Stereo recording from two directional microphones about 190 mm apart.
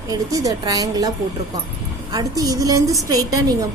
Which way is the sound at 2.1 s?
20° right (ahead or behind).